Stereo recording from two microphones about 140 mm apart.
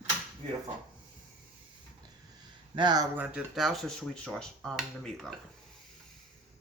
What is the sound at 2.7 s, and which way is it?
Speech, 30° right (ahead or behind).